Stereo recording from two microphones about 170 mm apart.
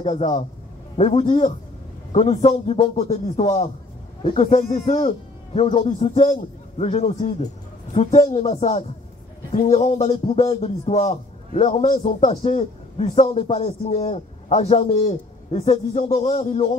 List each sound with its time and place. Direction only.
0.0 s a man's voice: 40° left (ahead or behind)
4.5 s a man's voice: 45° left (ahead or behind)